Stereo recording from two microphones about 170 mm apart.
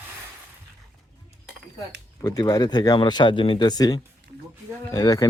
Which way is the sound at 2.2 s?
20° left (ahead or behind).